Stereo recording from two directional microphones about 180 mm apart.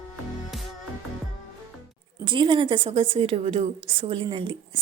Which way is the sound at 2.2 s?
25° right (ahead or behind).